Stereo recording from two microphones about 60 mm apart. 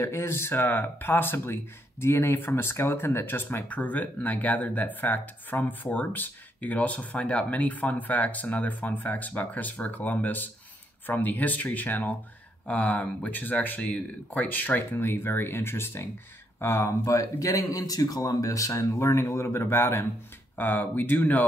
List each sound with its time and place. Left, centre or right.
0.0 s speech: left
20.5 s speech: left